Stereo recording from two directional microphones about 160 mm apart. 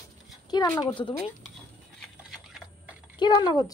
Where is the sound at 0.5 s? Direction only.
25° left (ahead or behind).